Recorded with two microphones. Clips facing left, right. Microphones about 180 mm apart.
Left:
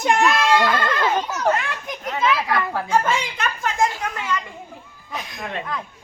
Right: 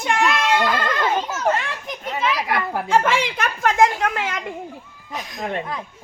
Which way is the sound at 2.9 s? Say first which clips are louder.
Right 4 dB; 80° right.